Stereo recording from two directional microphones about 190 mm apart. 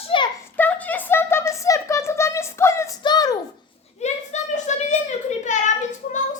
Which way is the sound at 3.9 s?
35° left (ahead or behind).